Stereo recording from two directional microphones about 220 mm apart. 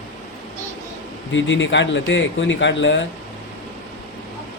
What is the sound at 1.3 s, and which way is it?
A man's voice, 55° left (ahead or behind).